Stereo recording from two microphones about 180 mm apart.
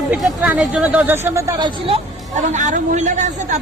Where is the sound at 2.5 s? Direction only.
40° right (ahead or behind).